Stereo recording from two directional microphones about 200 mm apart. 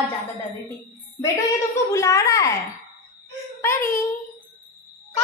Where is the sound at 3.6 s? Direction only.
15° left (ahead or behind).